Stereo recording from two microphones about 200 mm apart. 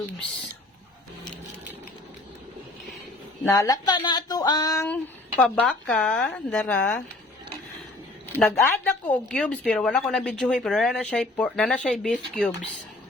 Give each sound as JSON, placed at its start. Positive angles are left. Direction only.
{"t": 3.4, "sound": "speech", "side_deg": 15}
{"t": 5.4, "sound": "speech", "side_deg": 5}
{"t": 8.4, "sound": "speech", "side_deg": 10}